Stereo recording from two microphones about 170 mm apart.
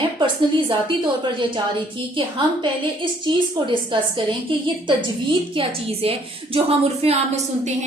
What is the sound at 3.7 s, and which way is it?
Speech, 30° right (ahead or behind).